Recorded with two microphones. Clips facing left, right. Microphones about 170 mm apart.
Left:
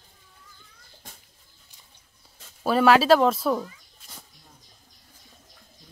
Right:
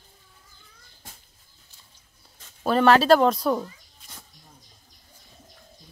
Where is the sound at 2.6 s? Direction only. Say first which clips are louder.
Even; 5° left (ahead or behind).